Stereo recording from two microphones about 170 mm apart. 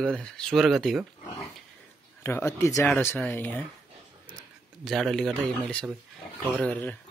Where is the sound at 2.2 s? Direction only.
15° left (ahead or behind).